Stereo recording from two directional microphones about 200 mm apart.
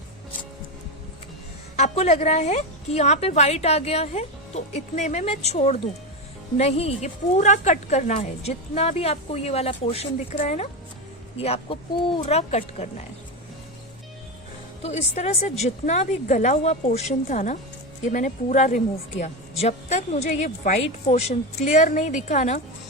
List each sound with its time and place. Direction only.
1.7 s a woman's voice: 35° left (ahead or behind)
15.1 s a woman's voice: 35° left (ahead or behind)